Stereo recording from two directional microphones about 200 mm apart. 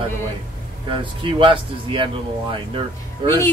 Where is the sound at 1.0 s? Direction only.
25° right (ahead or behind).